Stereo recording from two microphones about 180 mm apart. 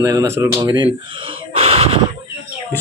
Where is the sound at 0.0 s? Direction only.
20° right (ahead or behind).